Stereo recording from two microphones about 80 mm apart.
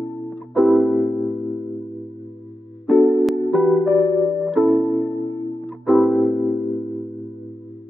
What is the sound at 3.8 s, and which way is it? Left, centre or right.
Music, centre.